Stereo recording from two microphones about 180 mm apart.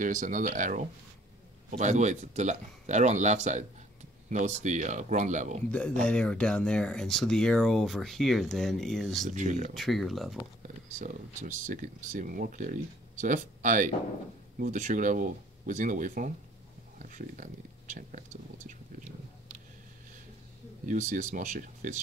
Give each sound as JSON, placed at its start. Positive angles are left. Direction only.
{"t": 0.0, "sound": "speech", "side_deg": -45}
{"t": 5.7, "sound": "speech", "side_deg": 5}
{"t": 9.3, "sound": "speech", "side_deg": -45}
{"t": 9.8, "sound": "speech", "side_deg": 0}
{"t": 11.0, "sound": "speech", "side_deg": -45}
{"t": 20.8, "sound": "speech", "side_deg": -45}